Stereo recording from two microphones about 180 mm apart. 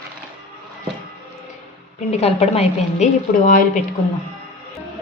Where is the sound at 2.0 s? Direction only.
35° left (ahead or behind).